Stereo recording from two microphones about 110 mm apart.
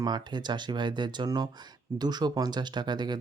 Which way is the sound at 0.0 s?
40° right (ahead or behind).